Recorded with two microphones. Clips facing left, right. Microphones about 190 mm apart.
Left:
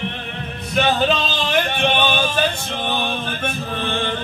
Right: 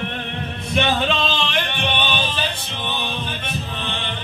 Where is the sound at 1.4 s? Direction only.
45° left (ahead or behind).